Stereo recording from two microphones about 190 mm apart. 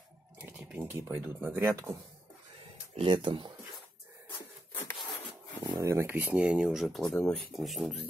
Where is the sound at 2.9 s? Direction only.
25° right (ahead or behind).